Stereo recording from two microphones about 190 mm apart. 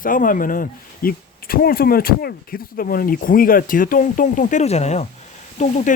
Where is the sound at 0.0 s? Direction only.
45° left (ahead or behind).